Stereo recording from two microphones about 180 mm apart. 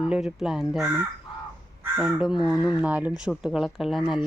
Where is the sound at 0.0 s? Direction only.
5° right (ahead or behind).